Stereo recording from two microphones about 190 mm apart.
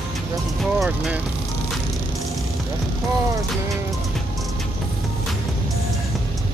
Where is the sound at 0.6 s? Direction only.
Centre (ahead or behind).